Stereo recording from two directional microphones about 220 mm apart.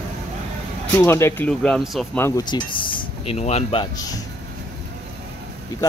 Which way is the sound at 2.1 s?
15° left (ahead or behind).